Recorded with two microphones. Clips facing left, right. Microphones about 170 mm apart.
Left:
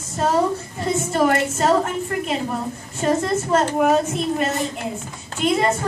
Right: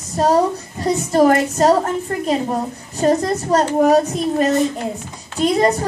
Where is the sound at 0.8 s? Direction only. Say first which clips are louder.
Right 5 dB; 35° right (ahead or behind).